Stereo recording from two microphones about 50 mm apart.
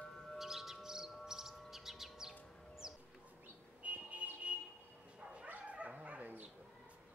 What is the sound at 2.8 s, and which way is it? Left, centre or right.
Bird, centre.